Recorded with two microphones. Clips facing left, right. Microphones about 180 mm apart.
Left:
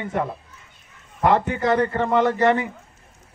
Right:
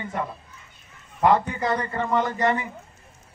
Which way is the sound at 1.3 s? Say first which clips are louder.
Left 3 dB; 65° left (ahead or behind).